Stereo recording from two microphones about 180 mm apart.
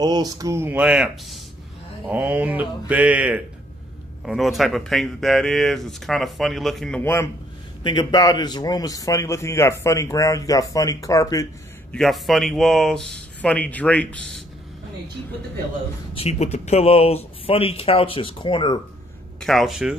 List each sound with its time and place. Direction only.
0.0 s speech: 20° right (ahead or behind); by 7.2 s 10° left (ahead or behind)
7.8 s a man's voice: 25° left (ahead or behind)
11.9 s speech: centre (ahead or behind)
16.2 s speech: 35° left (ahead or behind)
19.4 s speech: centre (ahead or behind)